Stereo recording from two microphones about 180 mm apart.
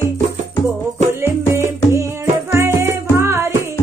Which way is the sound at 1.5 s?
15° right (ahead or behind).